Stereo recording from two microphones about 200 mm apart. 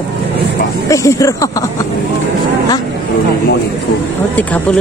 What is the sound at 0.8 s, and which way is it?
Speech, 15° left (ahead or behind).